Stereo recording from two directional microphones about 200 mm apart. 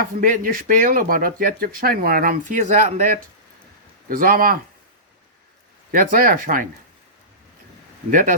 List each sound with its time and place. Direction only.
0.0 s speech: 45° right (ahead or behind)
5.9 s speech: 45° right (ahead or behind)
8.1 s speech: 45° right (ahead or behind)